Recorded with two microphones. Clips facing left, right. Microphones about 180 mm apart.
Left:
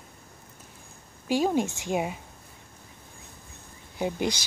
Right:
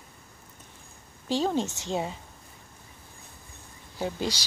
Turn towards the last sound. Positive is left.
turn(degrees=15)  # may be behind; listen again after turning